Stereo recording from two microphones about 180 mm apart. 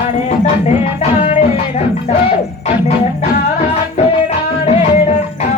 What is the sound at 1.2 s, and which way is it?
Music, 40° left (ahead or behind).